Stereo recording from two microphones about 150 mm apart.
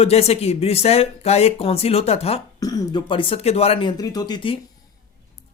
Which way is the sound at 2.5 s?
25° left (ahead or behind).